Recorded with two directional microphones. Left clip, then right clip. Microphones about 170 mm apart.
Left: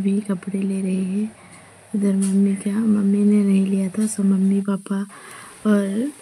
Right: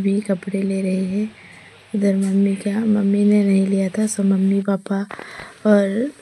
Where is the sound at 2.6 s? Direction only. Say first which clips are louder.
Right 1 dB; 20° right (ahead or behind).